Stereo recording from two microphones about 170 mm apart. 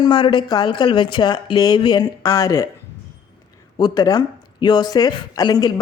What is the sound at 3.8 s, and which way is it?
A woman's voice, 25° left (ahead or behind).